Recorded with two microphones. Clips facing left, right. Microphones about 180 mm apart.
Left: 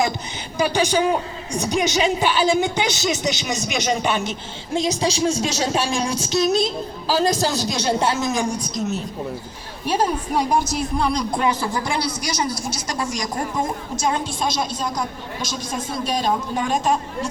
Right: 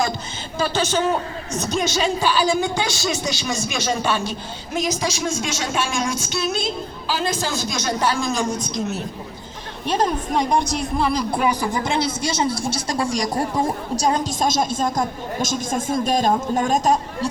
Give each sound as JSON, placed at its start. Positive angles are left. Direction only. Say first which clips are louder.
{"t": 0.6, "sound": "a man's voice", "louder": "left 2 dB", "side_deg": 15}
{"t": 9.8, "sound": "a woman's voice", "louder": "even", "side_deg": 10}